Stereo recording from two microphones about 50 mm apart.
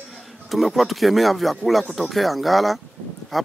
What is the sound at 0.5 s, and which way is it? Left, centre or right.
Speech, centre.